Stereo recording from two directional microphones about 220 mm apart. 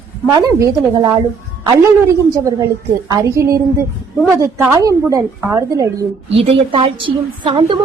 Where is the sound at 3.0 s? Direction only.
15° right (ahead or behind).